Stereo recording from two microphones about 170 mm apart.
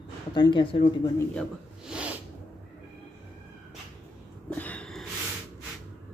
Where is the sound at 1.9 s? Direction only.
5° right (ahead or behind).